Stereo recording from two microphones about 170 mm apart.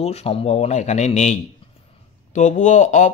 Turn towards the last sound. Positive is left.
turn(degrees=45)  # may be behind; listen again after turning